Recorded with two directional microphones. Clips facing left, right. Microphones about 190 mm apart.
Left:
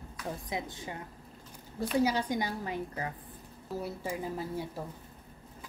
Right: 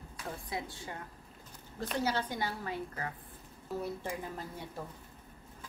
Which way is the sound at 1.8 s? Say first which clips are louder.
Left 5 dB; 10° left (ahead or behind).